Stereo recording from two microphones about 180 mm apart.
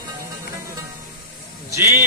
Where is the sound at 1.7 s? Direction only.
15° right (ahead or behind).